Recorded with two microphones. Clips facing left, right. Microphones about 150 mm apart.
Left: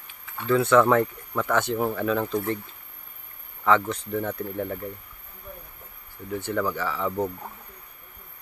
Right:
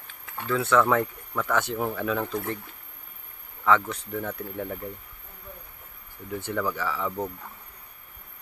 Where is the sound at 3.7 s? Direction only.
Centre (ahead or behind).